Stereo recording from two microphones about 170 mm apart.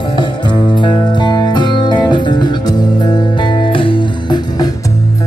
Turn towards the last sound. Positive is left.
turn(degrees=20)  # may be behind; listen again after turning